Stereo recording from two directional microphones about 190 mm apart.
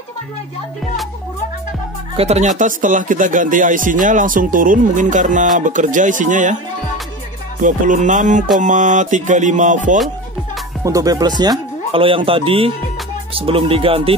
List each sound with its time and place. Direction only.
2.1 s speech: 35° right (ahead or behind)
7.6 s music: 40° right (ahead or behind)
10.8 s speech: 15° right (ahead or behind)